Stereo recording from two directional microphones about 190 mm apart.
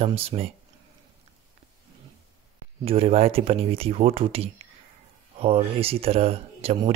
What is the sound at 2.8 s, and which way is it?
Speech, 30° right (ahead or behind).